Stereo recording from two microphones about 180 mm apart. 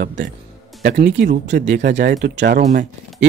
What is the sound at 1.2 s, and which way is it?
Speech, 70° right (ahead or behind).